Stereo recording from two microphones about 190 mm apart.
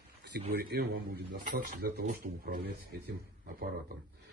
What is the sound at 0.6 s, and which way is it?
Speech, 55° right (ahead or behind).